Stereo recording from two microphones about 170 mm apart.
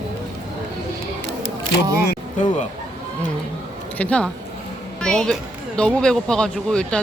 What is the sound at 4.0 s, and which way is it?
Speech, 5° left (ahead or behind).